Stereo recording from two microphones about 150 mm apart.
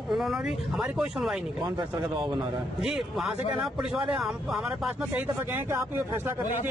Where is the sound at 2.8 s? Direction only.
Centre (ahead or behind).